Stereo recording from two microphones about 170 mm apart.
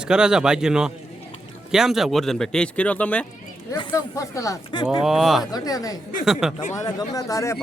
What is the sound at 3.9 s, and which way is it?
Speech, 20° left (ahead or behind).